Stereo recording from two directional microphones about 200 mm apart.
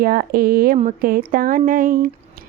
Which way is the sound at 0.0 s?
45° right (ahead or behind).